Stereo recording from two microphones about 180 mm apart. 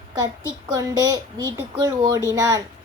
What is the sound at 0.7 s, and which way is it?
A child's voice, 20° right (ahead or behind).